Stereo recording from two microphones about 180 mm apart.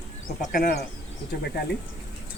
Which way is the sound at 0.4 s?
55° left (ahead or behind).